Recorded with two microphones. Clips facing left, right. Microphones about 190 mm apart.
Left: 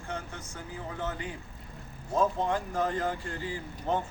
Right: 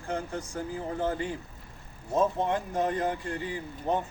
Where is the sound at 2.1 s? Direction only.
20° right (ahead or behind).